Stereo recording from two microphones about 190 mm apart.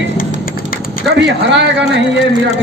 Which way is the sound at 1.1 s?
65° right (ahead or behind).